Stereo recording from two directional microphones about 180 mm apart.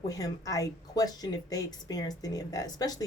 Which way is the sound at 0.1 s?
20° left (ahead or behind).